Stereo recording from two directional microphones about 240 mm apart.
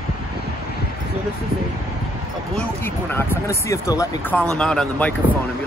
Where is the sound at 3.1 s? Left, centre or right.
Centre.